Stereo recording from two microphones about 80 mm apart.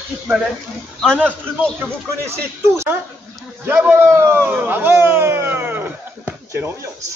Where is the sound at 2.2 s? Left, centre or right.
Right.